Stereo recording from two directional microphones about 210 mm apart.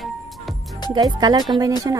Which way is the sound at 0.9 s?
20° right (ahead or behind).